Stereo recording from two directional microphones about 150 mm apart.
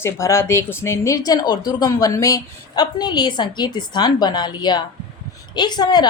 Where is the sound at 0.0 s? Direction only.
20° left (ahead or behind).